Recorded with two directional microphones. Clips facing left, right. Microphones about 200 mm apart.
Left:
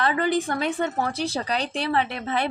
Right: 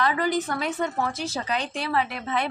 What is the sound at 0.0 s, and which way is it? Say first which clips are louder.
Speech: left 1 dB; 30° left (ahead or behind).